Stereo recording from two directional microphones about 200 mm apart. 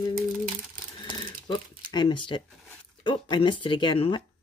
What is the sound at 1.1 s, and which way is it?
Speech, 20° left (ahead or behind).